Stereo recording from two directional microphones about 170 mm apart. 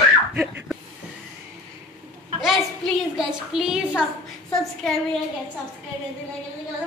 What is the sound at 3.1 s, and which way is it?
Speech, centre (ahead or behind).